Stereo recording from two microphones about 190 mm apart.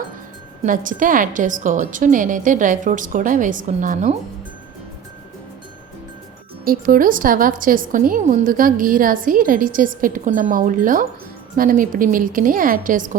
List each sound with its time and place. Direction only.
0.6 s a woman's voice: 45° right (ahead or behind)
6.7 s a woman's voice: 50° right (ahead or behind)